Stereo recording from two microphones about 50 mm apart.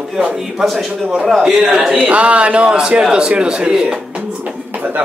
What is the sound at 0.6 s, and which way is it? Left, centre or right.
A man's voice, centre.